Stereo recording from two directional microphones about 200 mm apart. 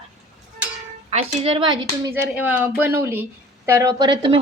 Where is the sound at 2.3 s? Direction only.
10° right (ahead or behind).